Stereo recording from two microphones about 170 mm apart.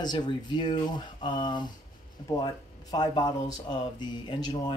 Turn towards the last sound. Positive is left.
turn(degrees=25)  # may be behind; listen again after turning